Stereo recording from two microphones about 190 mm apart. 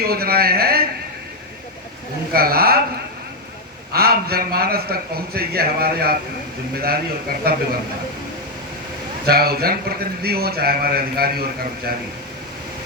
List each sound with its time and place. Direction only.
0.0 s a man's voice: 55° right (ahead or behind)
2.3 s a man's voice: 55° right (ahead or behind)
3.9 s a man's voice: 55° right (ahead or behind)
9.2 s a man's voice: 55° right (ahead or behind)